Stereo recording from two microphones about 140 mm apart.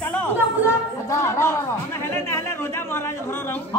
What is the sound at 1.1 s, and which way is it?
A man's voice, 20° left (ahead or behind).